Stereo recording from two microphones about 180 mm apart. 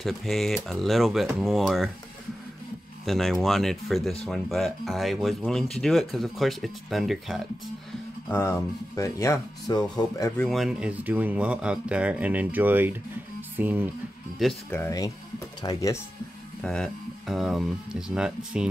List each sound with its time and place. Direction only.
0.0 s speech: centre (ahead or behind)
3.1 s speech: centre (ahead or behind)
8.3 s speech: 15° left (ahead or behind)
10.3 s speech: centre (ahead or behind)
14.4 s speech: 10° left (ahead or behind)
16.6 s speech: centre (ahead or behind)